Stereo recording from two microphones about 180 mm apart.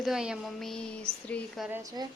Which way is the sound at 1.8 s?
20° right (ahead or behind).